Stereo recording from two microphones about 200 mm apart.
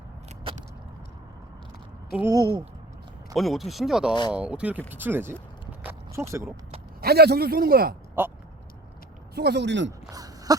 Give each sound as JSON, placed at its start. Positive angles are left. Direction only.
{"t": 0.5, "sound": "vehicle", "side_deg": -25}
{"t": 2.1, "sound": "speech", "side_deg": -15}
{"t": 3.3, "sound": "speech", "side_deg": 0}
{"t": 5.8, "sound": "biting", "side_deg": -10}
{"t": 7.0, "sound": "a man's voice", "side_deg": -50}
{"t": 8.2, "sound": "speech", "side_deg": -10}
{"t": 9.3, "sound": "speech", "side_deg": -55}
{"t": 10.1, "sound": "a sound", "side_deg": -20}